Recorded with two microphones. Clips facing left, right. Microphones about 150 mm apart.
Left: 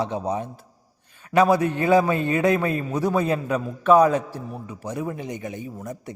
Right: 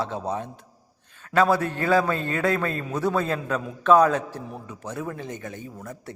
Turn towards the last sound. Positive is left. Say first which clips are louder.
# left 4 dB
turn(degrees=15)  # may be behind; listen again after turning